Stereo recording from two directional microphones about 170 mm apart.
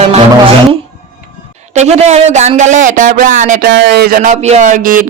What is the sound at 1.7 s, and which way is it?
Speech, 40° right (ahead or behind).